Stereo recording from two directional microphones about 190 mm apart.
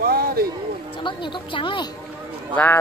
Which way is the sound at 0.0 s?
55° right (ahead or behind).